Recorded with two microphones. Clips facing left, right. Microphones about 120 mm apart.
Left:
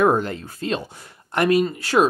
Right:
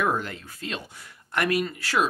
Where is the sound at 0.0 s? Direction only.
30° left (ahead or behind).